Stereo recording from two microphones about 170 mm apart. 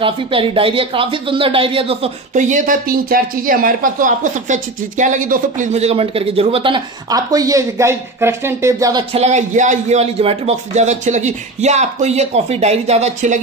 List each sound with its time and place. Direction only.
0.0 s speech: 30° right (ahead or behind)
2.3 s speech: 50° right (ahead or behind); by 9.0 s 20° right (ahead or behind)
9.1 s speech: 40° right (ahead or behind)